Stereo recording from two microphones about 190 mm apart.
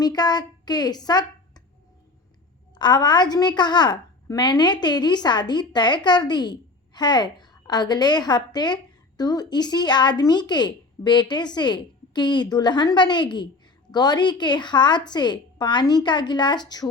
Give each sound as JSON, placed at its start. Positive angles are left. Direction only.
{"t": 0.0, "sound": "a woman's voice", "side_deg": 20}
{"t": 2.7, "sound": "a woman's voice", "side_deg": 20}